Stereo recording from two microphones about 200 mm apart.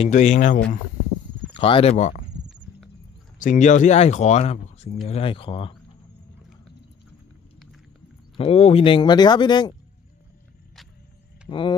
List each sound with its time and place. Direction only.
0.0 s speech: 35° left (ahead or behind)
1.6 s speech: 30° left (ahead or behind)
3.3 s speech: 40° left (ahead or behind)
8.4 s speech: 30° left (ahead or behind)
11.4 s speech: 25° left (ahead or behind)